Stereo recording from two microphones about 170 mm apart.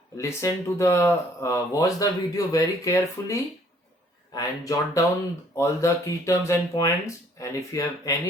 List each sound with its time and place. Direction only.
0.2 s speech: 15° left (ahead or behind)